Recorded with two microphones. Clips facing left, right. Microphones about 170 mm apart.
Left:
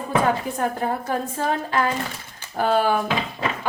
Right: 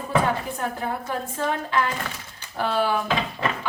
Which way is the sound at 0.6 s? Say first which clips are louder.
Left 4 dB; 45° left (ahead or behind).